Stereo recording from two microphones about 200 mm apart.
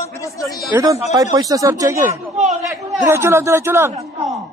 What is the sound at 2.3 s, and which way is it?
Speech, 35° right (ahead or behind).